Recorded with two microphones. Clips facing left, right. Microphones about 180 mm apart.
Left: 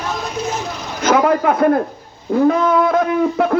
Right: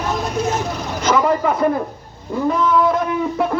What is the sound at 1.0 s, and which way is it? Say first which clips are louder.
Speech: left 3 dB; 60° left (ahead or behind).